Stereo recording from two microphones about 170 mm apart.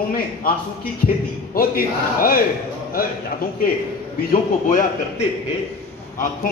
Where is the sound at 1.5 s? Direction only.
55° left (ahead or behind).